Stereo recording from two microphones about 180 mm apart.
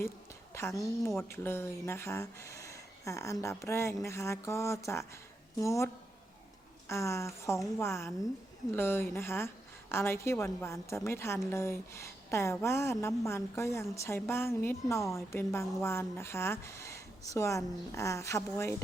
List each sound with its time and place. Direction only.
0.5 s speech: 15° left (ahead or behind)